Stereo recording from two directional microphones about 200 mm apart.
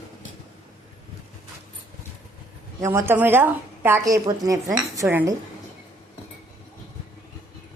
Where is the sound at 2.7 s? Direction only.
15° right (ahead or behind).